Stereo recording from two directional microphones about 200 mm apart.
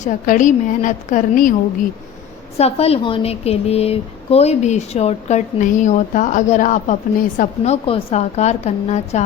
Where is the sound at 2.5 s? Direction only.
30° left (ahead or behind).